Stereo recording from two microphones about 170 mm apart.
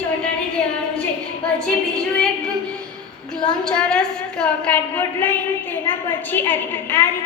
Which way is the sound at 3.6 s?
5° left (ahead or behind).